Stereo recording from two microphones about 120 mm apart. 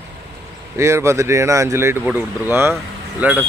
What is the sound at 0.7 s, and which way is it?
Speech, 25° right (ahead or behind).